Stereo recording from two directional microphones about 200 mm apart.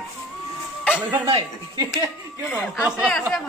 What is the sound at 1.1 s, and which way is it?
Speech, 20° right (ahead or behind).